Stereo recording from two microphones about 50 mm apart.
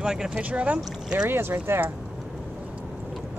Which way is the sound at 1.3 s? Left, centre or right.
Right.